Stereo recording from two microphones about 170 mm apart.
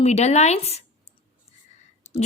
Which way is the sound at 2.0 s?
40° left (ahead or behind).